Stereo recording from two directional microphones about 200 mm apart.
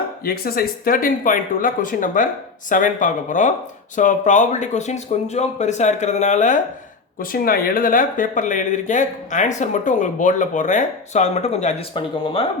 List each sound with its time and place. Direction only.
0.3 s speech: 50° left (ahead or behind); by 12.5 s 25° left (ahead or behind)